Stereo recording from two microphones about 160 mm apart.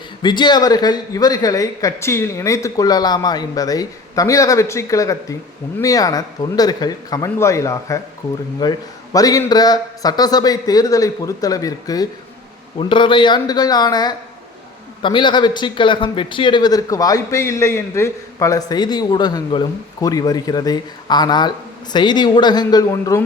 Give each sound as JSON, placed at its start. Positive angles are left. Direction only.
{"t": 0.2, "sound": "a man's voice", "side_deg": 30}